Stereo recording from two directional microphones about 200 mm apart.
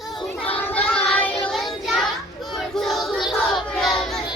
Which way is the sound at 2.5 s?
Centre (ahead or behind).